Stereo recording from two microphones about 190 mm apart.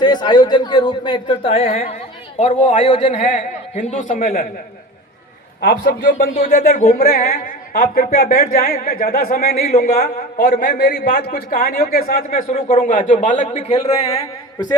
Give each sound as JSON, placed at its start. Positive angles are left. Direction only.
{"t": 0.0, "sound": "a man's voice", "side_deg": 20}
{"t": 5.6, "sound": "a man's voice", "side_deg": 60}
{"t": 6.3, "sound": "a man's voice", "side_deg": 40}